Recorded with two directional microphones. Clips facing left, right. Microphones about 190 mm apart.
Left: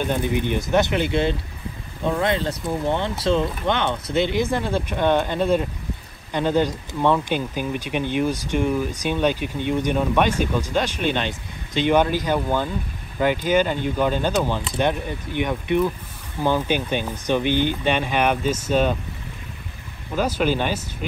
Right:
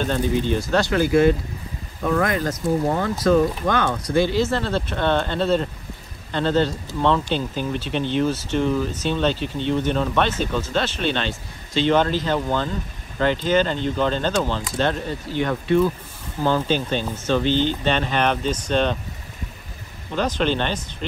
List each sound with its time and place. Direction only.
0.0 s speech: 15° left (ahead or behind)
20.2 s speech: 10° left (ahead or behind)